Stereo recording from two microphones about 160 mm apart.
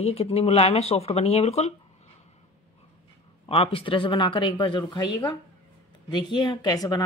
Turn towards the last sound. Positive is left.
turn(degrees=25)  # may be behind; listen again after turning